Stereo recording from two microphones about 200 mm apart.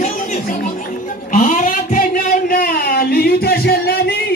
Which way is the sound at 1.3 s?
40° left (ahead or behind).